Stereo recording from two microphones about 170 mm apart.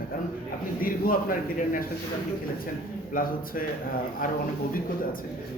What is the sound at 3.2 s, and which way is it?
Speech, 55° left (ahead or behind).